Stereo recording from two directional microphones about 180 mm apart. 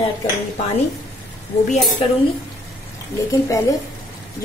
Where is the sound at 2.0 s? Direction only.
30° left (ahead or behind).